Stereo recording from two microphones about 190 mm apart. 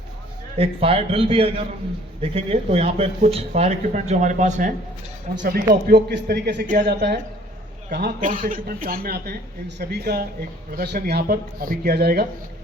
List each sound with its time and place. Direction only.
0.5 s a man's voice: 30° right (ahead or behind)
5.3 s speech: 60° right (ahead or behind)